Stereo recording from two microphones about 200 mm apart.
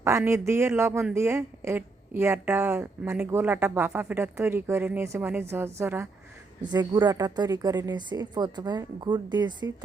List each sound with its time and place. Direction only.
0.0 s a woman's voice: 15° right (ahead or behind)